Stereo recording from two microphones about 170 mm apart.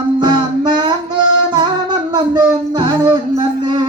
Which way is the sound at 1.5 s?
25° right (ahead or behind).